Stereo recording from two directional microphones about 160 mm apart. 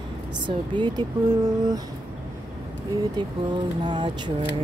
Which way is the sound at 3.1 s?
25° right (ahead or behind).